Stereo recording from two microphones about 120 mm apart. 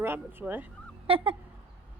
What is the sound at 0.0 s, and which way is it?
Speech, 20° right (ahead or behind).